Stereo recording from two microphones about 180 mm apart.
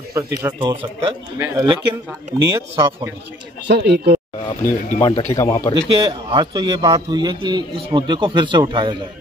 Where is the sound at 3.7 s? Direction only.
65° right (ahead or behind).